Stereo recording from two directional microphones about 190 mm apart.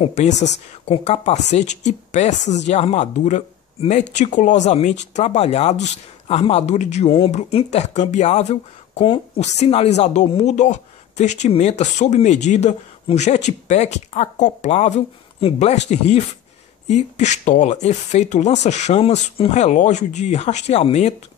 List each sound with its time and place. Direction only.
0.0 s speech: 40° left (ahead or behind)